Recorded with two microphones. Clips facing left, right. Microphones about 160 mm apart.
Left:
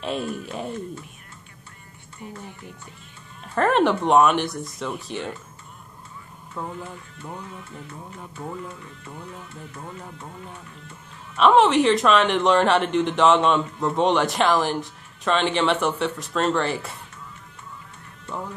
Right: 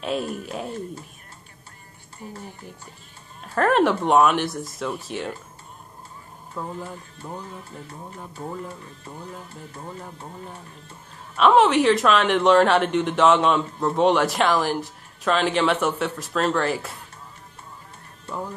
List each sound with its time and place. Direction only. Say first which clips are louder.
0.0 s speech: right 1 dB; centre (ahead or behind)
2.3 s music: even; 35° right (ahead or behind)
3.5 s speech: even; centre (ahead or behind)
6.6 s speech: even; centre (ahead or behind)
7.2 s music: even; 35° right (ahead or behind)
11.3 s speech: even; centre (ahead or behind)